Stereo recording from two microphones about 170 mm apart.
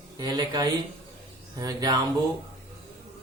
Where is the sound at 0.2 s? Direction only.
25° right (ahead or behind).